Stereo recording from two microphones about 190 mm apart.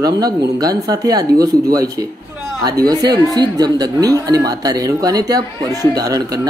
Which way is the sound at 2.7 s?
20° right (ahead or behind).